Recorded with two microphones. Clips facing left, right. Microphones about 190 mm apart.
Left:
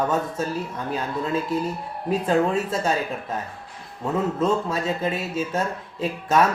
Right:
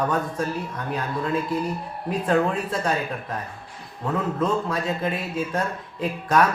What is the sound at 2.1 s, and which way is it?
Speech, 25° left (ahead or behind).